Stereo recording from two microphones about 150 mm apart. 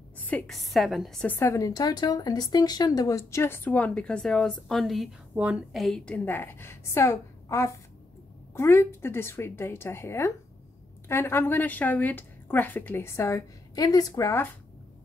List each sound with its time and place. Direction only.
0.3 s a woman's voice: centre (ahead or behind); by 14.5 s 15° left (ahead or behind)